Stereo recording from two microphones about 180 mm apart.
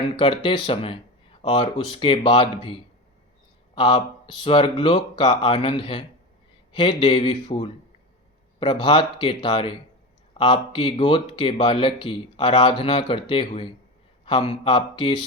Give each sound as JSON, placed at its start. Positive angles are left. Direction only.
{"t": 0.2, "sound": "speech", "side_deg": 30}
{"t": 3.8, "sound": "speech", "side_deg": 25}